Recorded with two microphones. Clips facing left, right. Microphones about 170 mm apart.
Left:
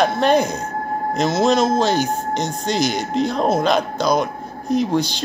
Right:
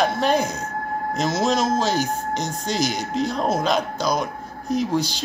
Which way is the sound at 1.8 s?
60° left (ahead or behind).